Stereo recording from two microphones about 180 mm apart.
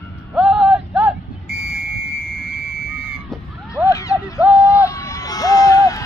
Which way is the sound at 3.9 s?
20° left (ahead or behind).